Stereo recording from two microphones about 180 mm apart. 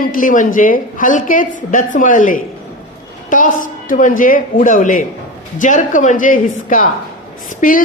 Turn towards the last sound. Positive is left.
turn(degrees=45)  # may be behind; listen again after turning